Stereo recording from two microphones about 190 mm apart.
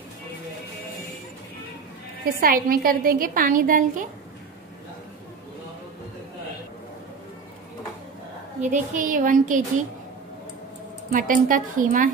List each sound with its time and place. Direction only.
2.2 s a woman's voice: 50° right (ahead or behind)
8.6 s a woman's voice: 45° right (ahead or behind)
11.1 s a woman's voice: 45° right (ahead or behind)